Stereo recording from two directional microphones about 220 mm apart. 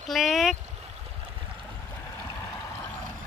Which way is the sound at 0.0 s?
Centre (ahead or behind).